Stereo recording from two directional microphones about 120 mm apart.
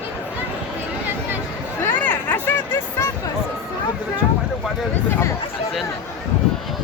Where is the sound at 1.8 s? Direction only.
15° left (ahead or behind).